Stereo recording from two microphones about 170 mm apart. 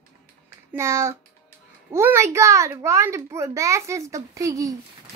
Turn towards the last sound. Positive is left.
turn(degrees=-20)  # may be behind; listen again after turning